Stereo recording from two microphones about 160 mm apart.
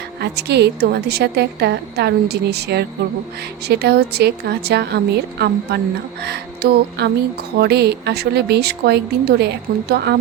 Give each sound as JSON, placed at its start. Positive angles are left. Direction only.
{"t": 0.2, "sound": "a woman's voice", "side_deg": -90}